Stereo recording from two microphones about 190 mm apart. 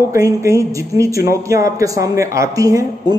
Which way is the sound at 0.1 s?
15° right (ahead or behind).